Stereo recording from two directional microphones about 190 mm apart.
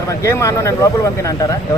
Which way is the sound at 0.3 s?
15° left (ahead or behind).